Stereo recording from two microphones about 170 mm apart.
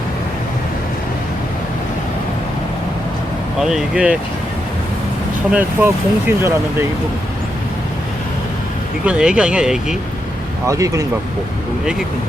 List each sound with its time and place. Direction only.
3.6 s speech: 5° right (ahead or behind)
5.5 s speech: 10° right (ahead or behind)
9.0 s speech: 5° right (ahead or behind)
10.7 s speech: 20° right (ahead or behind)